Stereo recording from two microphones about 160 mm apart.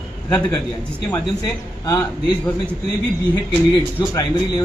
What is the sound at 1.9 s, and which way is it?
Speech, 25° left (ahead or behind).